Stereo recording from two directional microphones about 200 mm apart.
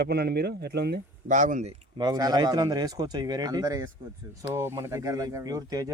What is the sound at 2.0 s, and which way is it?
Speech, 20° right (ahead or behind).